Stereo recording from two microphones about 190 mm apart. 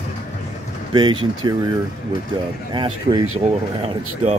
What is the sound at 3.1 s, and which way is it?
Speech, 40° right (ahead or behind).